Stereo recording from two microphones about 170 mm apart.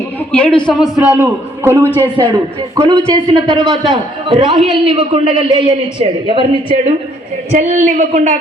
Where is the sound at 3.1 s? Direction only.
25° right (ahead or behind).